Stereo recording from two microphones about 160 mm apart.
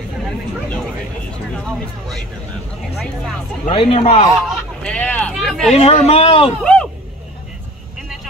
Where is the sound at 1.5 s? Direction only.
5° left (ahead or behind).